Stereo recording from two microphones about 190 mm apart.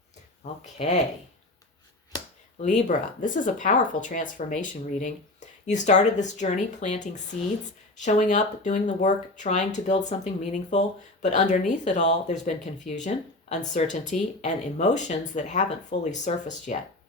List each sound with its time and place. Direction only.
2.6 s speech: 40° left (ahead or behind)